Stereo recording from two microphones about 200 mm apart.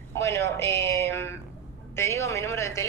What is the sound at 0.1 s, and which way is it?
A woman's voice, 15° left (ahead or behind).